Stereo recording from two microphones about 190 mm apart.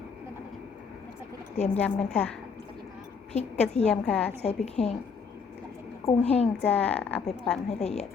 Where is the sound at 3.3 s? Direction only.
35° left (ahead or behind).